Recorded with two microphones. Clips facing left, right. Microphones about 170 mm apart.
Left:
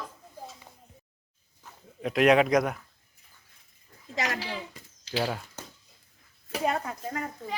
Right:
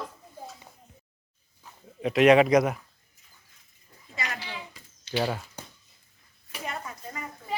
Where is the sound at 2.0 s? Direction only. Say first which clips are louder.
Right 3 dB; centre (ahead or behind).